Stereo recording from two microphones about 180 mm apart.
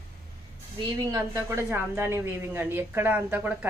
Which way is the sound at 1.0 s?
15° right (ahead or behind).